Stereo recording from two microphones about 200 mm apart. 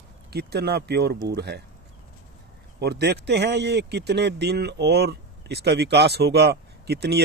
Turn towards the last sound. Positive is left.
turn(degrees=-55)  # may be behind; listen again after turning